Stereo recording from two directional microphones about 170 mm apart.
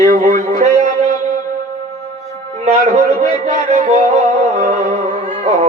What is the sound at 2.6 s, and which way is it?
Speech, 40° right (ahead or behind).